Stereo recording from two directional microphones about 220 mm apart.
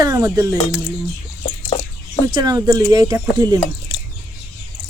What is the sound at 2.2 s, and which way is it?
Speech, 15° right (ahead or behind).